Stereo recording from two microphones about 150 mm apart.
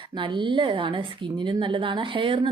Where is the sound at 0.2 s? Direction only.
35° right (ahead or behind).